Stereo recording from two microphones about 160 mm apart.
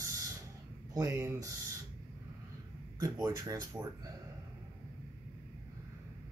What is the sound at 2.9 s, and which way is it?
Speech, 25° right (ahead or behind).